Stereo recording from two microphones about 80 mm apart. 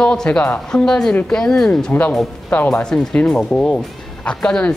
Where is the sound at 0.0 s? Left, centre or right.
Centre.